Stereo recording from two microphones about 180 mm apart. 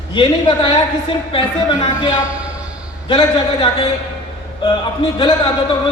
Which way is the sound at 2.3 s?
5° right (ahead or behind).